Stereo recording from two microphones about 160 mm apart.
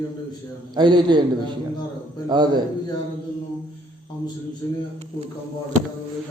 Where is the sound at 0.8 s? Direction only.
25° right (ahead or behind).